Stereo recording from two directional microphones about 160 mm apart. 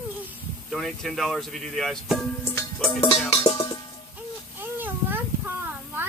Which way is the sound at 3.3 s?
25° left (ahead or behind).